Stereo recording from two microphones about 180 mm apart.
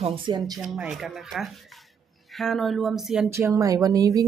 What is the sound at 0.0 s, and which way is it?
Speech, 25° right (ahead or behind).